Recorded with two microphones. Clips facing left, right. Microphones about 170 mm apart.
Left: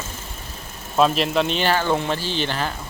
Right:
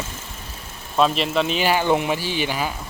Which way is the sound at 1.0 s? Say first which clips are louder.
Left 1 dB; centre (ahead or behind).